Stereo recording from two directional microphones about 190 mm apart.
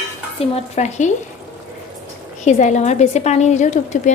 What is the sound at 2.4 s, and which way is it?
A woman's voice, 40° left (ahead or behind).